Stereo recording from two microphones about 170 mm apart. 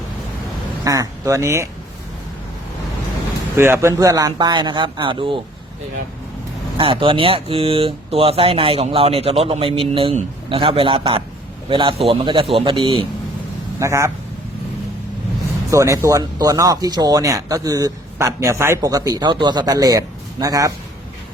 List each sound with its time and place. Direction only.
0.9 s speech: 20° right (ahead or behind)
3.6 s speech: 15° right (ahead or behind)
6.7 s speech: 30° right (ahead or behind)
13.7 s speech: 15° right (ahead or behind)
15.7 s speech: 20° right (ahead or behind)